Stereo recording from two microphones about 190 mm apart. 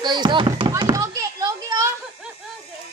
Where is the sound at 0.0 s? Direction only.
25° right (ahead or behind).